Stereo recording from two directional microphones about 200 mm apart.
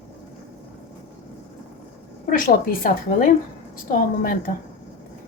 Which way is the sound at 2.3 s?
45° left (ahead or behind).